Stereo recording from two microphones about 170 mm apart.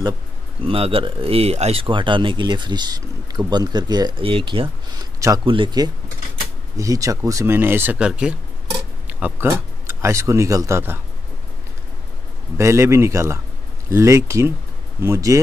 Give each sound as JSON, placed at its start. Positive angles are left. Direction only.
{"t": 0.6, "sound": "speech", "side_deg": -35}
{"t": 12.5, "sound": "speech", "side_deg": -15}